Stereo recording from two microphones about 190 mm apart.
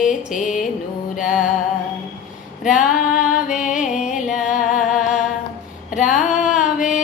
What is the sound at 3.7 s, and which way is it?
Music, 5° right (ahead or behind).